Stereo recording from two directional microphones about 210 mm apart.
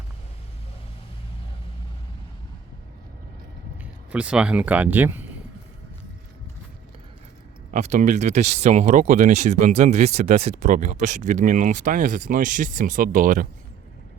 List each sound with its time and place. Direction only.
4.1 s speech: 5° right (ahead or behind)
7.7 s speech: 35° right (ahead or behind)